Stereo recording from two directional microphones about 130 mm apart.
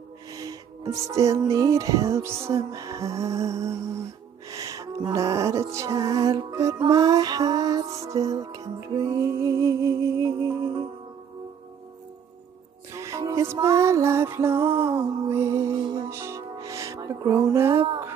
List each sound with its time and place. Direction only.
0.3 s music: 30° right (ahead or behind)
12.9 s music: 25° right (ahead or behind)